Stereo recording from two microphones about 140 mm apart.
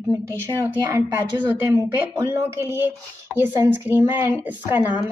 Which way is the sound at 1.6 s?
20° right (ahead or behind).